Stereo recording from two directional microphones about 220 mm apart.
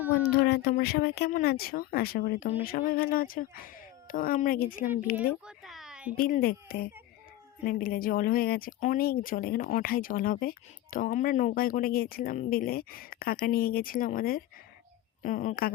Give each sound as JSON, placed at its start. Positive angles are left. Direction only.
{"t": 0.3, "sound": "speech", "side_deg": 50}
{"t": 5.5, "sound": "a sound", "side_deg": 0}
{"t": 6.1, "sound": "speech", "side_deg": 40}